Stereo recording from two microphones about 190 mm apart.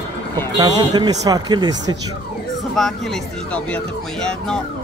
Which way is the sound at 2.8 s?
Centre (ahead or behind).